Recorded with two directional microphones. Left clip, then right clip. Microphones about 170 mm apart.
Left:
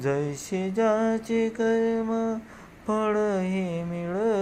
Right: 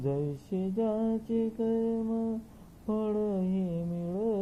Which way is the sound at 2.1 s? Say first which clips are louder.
Left 6 dB; 25° left (ahead or behind).